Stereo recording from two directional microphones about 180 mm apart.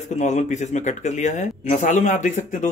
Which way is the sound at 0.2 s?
40° left (ahead or behind).